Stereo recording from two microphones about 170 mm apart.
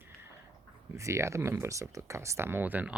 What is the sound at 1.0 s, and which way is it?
Speech, 15° right (ahead or behind).